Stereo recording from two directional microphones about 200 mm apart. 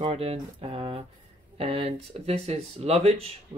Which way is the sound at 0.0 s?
30° right (ahead or behind).